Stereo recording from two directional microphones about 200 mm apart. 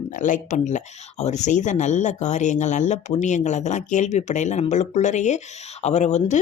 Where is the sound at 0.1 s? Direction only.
40° left (ahead or behind).